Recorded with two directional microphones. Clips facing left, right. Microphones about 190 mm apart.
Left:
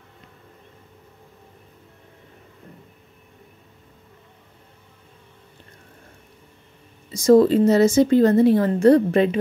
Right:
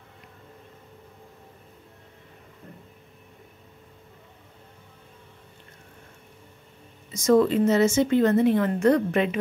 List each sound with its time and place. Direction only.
7.1 s a woman's voice: 35° left (ahead or behind)